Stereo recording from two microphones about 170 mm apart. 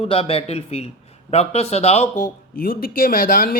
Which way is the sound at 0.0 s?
35° left (ahead or behind).